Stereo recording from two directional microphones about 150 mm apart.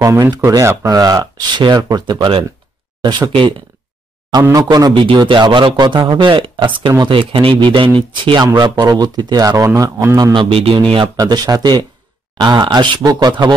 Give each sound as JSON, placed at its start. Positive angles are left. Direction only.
{"t": 0.0, "sound": "a man's voice", "side_deg": -20}
{"t": 10.1, "sound": "speech", "side_deg": -30}
{"t": 11.1, "sound": "speech", "side_deg": -25}